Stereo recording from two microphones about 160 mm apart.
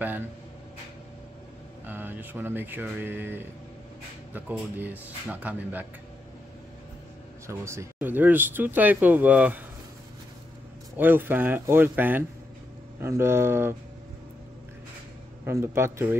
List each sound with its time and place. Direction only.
1.9 s speech: 10° right (ahead or behind)
7.4 s speech: 15° right (ahead or behind)
11.0 s speech: 10° right (ahead or behind)
15.4 s speech: 15° right (ahead or behind)